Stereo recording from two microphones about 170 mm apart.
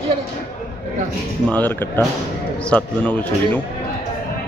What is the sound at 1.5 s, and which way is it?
Speech, 10° left (ahead or behind).